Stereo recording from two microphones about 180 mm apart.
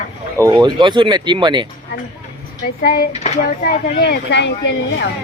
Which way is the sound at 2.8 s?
60° left (ahead or behind).